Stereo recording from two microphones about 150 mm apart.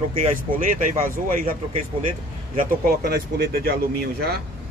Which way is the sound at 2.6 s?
85° right.